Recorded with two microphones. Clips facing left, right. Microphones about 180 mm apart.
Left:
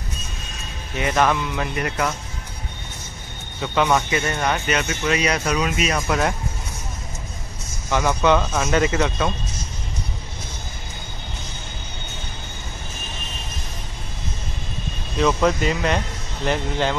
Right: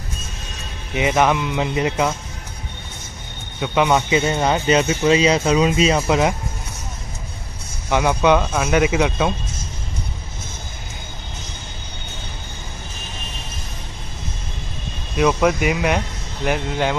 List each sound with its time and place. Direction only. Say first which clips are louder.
0.9 s speech: right 3 dB; 15° right (ahead or behind)
3.6 s speech: right 2 dB; 15° right (ahead or behind)
7.9 s speech: right 2 dB; 15° right (ahead or behind)
15.1 s speech: right 2 dB; 10° right (ahead or behind)